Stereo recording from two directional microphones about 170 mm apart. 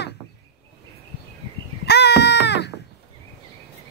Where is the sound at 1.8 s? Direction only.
75° left (ahead or behind).